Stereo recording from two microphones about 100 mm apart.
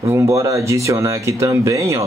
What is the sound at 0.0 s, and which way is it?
Speech, 30° right (ahead or behind).